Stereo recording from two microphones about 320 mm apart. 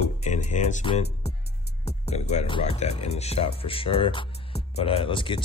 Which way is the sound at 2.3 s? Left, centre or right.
Centre.